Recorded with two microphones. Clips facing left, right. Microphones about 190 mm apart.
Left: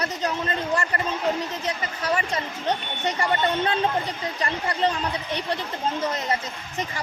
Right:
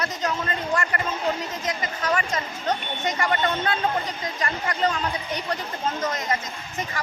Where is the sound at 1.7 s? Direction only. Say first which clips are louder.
Right 2 dB; 35° left (ahead or behind).